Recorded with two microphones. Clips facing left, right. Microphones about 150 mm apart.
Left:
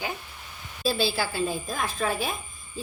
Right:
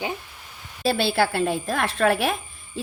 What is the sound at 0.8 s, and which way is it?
A woman's voice, 65° right (ahead or behind).